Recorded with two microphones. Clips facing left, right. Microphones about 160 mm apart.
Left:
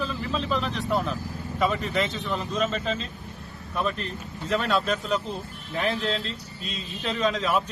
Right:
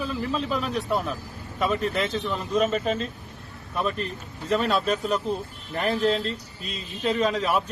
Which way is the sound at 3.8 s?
Centre (ahead or behind).